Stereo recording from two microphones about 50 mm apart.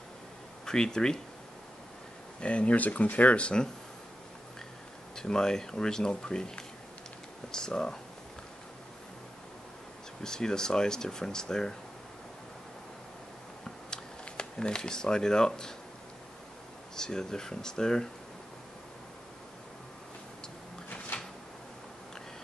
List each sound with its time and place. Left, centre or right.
0.7 s speech: centre
2.4 s speech: left
5.1 s speech: centre
10.2 s speech: centre
13.7 s camera: centre
16.9 s speech: centre
21.1 s a sound: left